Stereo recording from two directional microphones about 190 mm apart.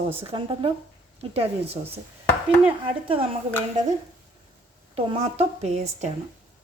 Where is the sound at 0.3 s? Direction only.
25° right (ahead or behind).